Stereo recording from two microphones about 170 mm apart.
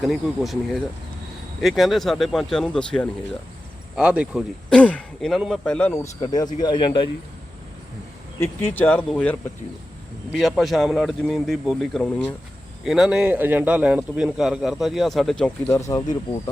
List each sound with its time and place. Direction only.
0.0 s a man's voice: centre (ahead or behind)
3.9 s a man's voice: 5° right (ahead or behind)
4.7 s a man's voice: 5° left (ahead or behind)
6.0 s speech: 25° left (ahead or behind)
8.4 s a man's voice: 10° left (ahead or behind)